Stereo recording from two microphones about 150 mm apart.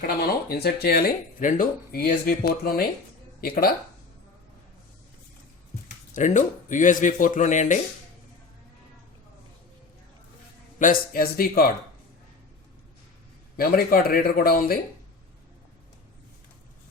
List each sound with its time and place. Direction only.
0.2 s speech: 90° left
6.1 s speech: 55° left (ahead or behind)
10.8 s speech: 65° left (ahead or behind); by 11.7 s 90° left
13.6 s speech: 85° left